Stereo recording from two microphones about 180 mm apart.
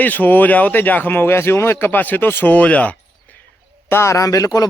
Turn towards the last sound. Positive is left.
turn(degrees=20)  # may be behind; listen again after turning